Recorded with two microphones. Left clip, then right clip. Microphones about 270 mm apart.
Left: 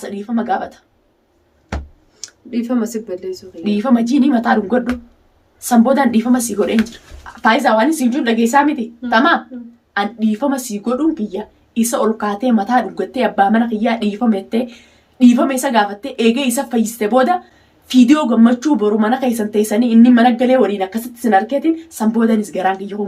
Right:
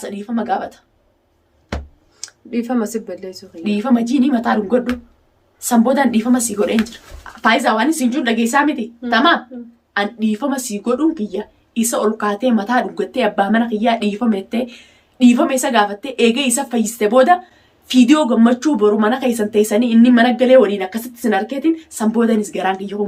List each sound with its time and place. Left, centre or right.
0.0 s speech: centre
2.2 s speech: centre
3.6 s speech: centre